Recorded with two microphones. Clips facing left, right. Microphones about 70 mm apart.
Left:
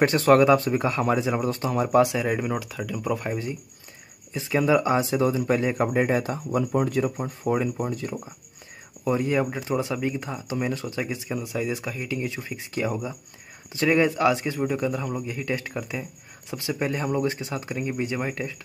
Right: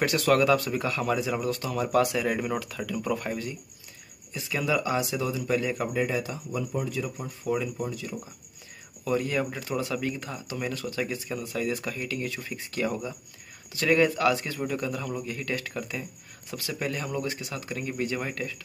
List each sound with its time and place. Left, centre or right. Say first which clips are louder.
0.0 s a man's voice: left 5 dB; left
4.3 s a man's voice: left 7 dB; left